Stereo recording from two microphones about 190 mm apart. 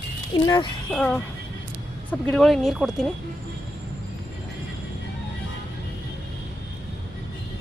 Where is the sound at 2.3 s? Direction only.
Centre (ahead or behind).